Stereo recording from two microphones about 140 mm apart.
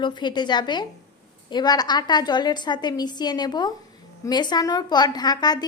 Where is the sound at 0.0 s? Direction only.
35° left (ahead or behind).